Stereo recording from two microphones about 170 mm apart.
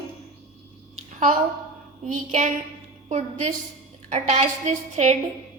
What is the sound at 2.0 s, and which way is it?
A woman's voice, 45° right (ahead or behind).